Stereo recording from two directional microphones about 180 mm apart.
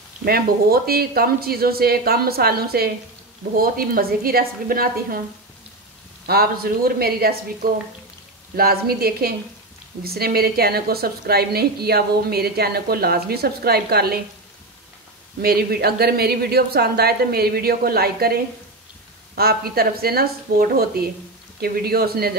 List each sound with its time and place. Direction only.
0.2 s a woman's voice: 60° right (ahead or behind)
6.2 s a woman's voice: 60° right (ahead or behind)
15.4 s a woman's voice: 60° right (ahead or behind)